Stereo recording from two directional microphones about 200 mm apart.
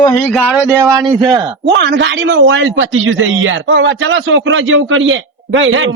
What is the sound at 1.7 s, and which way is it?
A man's voice, 60° right (ahead or behind).